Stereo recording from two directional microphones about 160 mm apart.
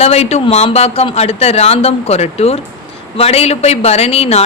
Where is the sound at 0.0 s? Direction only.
40° left (ahead or behind).